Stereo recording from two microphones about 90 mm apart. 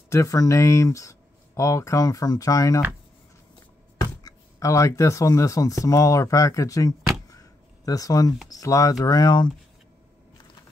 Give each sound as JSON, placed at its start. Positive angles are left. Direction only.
{"t": 0.1, "sound": "speech", "side_deg": 40}
{"t": 4.0, "sound": "speech", "side_deg": 40}
{"t": 7.2, "sound": "a sound", "side_deg": 40}
{"t": 8.5, "sound": "speech", "side_deg": 40}